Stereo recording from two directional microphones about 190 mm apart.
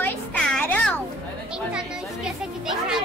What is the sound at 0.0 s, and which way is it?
Music, 10° left (ahead or behind).